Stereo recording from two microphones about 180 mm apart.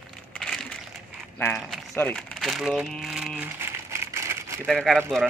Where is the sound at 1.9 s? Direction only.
10° left (ahead or behind); by 4.6 s 15° right (ahead or behind).